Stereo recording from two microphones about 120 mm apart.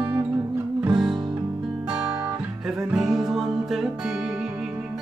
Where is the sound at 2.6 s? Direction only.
5° right (ahead or behind).